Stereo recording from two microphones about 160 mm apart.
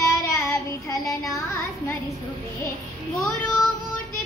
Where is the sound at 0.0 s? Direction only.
20° left (ahead or behind).